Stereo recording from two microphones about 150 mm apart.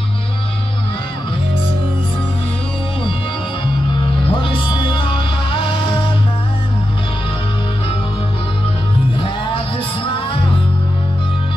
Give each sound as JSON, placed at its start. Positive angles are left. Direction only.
{"t": 4.2, "sound": "music", "side_deg": 35}
{"t": 9.1, "sound": "music", "side_deg": 35}